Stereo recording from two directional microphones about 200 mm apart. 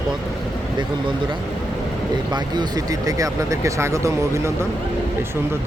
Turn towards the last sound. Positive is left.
turn(degrees=-15)  # may be behind; listen again after turning